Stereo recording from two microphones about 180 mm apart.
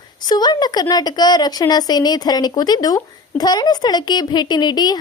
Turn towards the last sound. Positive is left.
turn(degrees=25)  # may be behind; listen again after turning